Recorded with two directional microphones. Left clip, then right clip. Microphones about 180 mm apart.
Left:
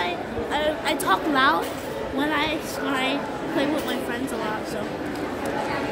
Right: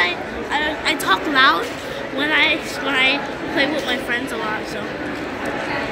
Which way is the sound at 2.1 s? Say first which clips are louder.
Right 8 dB; 40° left (ahead or behind).